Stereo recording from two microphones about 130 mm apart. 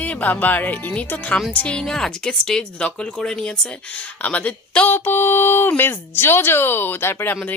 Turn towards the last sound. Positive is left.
turn(degrees=15)  # may be behind; listen again after turning